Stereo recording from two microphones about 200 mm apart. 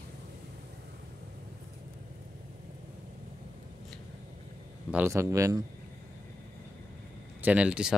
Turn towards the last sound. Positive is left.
turn(degrees=-5)  # may be behind; listen again after turning